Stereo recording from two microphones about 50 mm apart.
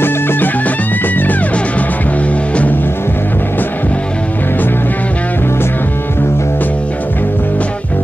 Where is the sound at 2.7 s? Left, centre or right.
Left.